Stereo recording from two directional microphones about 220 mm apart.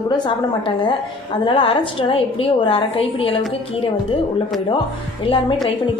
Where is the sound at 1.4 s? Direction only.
25° left (ahead or behind).